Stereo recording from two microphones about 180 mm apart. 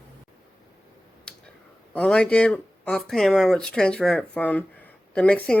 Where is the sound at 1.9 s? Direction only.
5° left (ahead or behind).